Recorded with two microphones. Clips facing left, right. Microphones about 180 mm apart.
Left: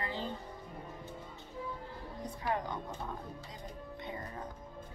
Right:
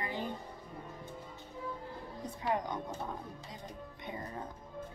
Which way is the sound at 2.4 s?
20° right (ahead or behind).